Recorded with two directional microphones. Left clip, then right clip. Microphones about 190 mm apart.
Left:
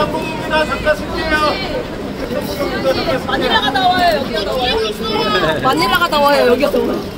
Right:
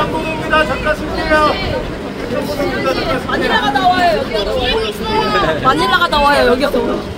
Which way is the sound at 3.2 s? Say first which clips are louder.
Right 1 dB; centre (ahead or behind).